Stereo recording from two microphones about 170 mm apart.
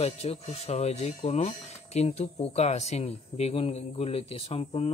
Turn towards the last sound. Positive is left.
turn(degrees=35)  # may be behind; listen again after turning